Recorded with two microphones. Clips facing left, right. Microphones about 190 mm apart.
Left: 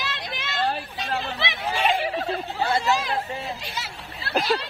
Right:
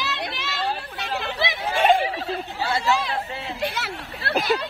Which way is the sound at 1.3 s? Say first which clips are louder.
Right 3 dB; 50° right (ahead or behind).